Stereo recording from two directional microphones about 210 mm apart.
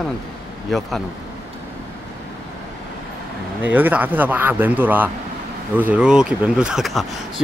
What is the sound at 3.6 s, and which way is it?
Speech, 10° right (ahead or behind).